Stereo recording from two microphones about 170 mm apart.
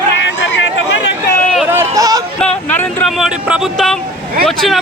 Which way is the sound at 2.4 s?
10° left (ahead or behind).